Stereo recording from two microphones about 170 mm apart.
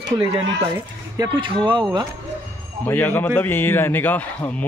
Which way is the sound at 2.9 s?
10° left (ahead or behind).